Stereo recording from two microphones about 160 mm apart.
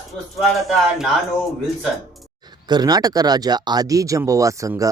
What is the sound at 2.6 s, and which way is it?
Speech, 25° right (ahead or behind).